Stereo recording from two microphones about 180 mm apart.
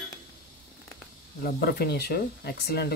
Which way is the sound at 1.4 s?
60° left (ahead or behind).